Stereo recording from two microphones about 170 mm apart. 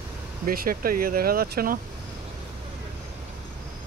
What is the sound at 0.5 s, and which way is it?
Speech, 55° right (ahead or behind).